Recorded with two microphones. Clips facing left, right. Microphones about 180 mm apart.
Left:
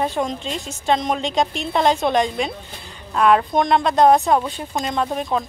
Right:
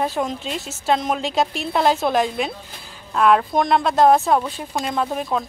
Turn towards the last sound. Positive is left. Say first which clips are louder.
# left 1 dB
turn(degrees=0)  # may be behind; listen again after turning